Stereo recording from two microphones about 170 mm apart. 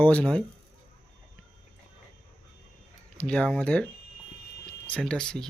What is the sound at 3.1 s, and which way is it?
Speech, 5° left (ahead or behind).